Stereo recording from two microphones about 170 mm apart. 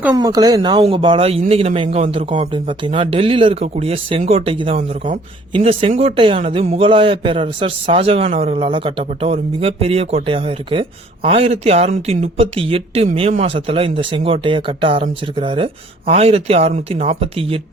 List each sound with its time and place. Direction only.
0.1 s a man's voice: 20° right (ahead or behind)